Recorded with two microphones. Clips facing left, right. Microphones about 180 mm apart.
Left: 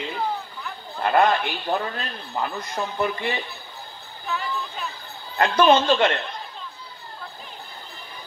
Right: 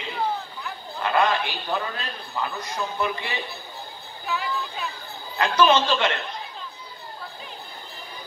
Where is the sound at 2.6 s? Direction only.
55° left (ahead or behind).